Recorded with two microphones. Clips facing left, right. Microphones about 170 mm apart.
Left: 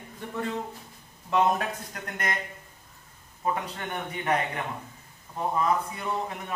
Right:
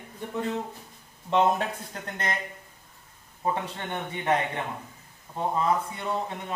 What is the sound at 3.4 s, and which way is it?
Speech, 25° right (ahead or behind).